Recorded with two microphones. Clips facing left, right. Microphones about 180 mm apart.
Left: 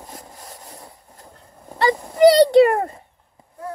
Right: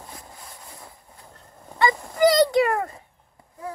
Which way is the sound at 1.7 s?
35° left (ahead or behind).